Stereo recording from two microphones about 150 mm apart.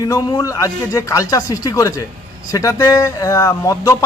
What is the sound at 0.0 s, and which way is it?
A man's voice, 25° left (ahead or behind).